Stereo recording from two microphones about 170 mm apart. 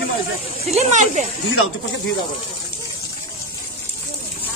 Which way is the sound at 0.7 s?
45° right (ahead or behind).